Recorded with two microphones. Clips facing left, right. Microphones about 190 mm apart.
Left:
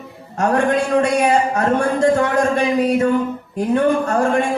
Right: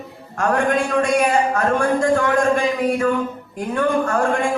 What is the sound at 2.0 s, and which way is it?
Speech, 20° left (ahead or behind).